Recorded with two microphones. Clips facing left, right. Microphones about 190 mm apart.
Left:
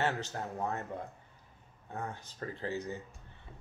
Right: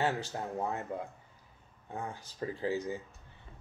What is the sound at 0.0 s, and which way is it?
Speech, 15° right (ahead or behind).